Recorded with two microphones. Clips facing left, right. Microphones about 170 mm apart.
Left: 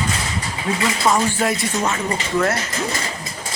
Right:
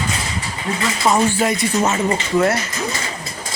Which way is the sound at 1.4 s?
Centre (ahead or behind).